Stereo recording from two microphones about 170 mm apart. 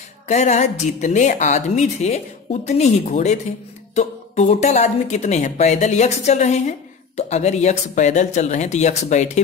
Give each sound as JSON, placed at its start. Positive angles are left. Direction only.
{"t": 0.3, "sound": "a woman's voice", "side_deg": 45}